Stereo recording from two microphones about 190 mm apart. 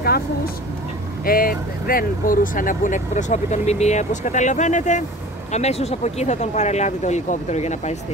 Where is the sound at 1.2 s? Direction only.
50° left (ahead or behind).